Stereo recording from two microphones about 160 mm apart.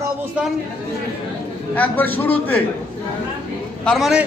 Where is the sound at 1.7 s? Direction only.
10° left (ahead or behind).